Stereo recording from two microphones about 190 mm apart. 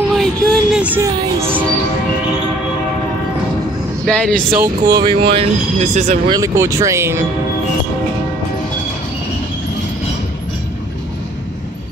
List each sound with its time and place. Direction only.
0.1 s a sound: centre (ahead or behind)
4.0 s speech: 5° left (ahead or behind)
4.5 s speech: 15° right (ahead or behind); by 6.3 s 35° right (ahead or behind)
6.3 s speech: 15° right (ahead or behind)